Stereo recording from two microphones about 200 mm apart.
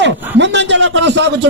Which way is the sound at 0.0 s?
65° right (ahead or behind).